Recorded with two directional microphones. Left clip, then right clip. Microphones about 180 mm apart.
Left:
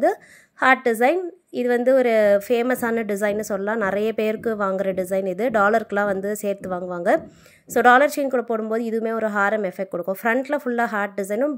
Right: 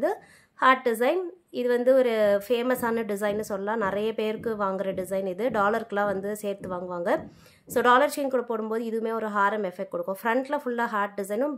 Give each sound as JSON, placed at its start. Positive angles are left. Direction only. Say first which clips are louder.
{"t": 0.0, "sound": "a woman's voice", "louder": "left 7 dB", "side_deg": 25}